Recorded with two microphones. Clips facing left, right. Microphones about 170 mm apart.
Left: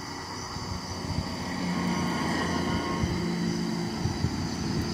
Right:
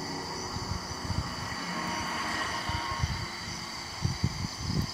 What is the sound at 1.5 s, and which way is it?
Train, 25° left (ahead or behind).